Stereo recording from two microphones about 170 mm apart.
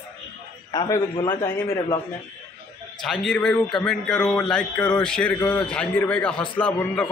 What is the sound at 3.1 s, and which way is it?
A man's voice, 5° left (ahead or behind).